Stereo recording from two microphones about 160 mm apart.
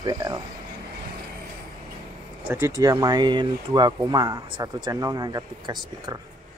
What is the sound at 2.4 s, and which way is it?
Speech, 15° right (ahead or behind).